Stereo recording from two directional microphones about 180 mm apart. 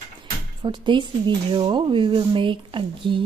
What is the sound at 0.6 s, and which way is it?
A woman's voice, 25° right (ahead or behind).